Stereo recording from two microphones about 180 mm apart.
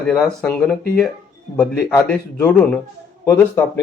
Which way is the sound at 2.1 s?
5° left (ahead or behind).